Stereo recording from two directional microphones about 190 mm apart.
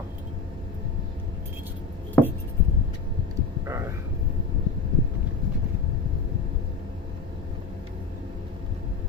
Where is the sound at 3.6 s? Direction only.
15° right (ahead or behind).